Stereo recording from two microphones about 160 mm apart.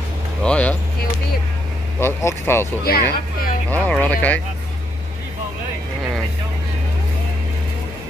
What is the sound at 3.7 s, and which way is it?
Speech, 10° left (ahead or behind).